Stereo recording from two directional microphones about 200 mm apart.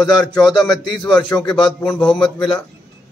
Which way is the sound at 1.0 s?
20° left (ahead or behind).